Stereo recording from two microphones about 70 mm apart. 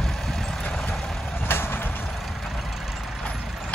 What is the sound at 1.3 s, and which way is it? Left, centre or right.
Vehicle, left.